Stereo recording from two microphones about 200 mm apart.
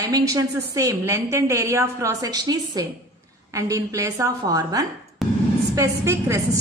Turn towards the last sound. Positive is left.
turn(degrees=-15)  # may be behind; listen again after turning